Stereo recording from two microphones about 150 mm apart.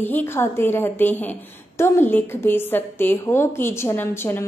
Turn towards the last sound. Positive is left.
turn(degrees=15)  # may be behind; listen again after turning